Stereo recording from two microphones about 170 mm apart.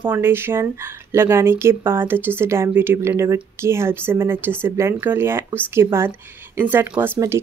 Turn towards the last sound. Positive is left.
turn(degrees=-15)  # may be behind; listen again after turning